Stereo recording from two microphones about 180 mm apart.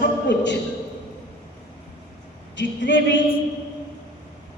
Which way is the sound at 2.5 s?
90° left.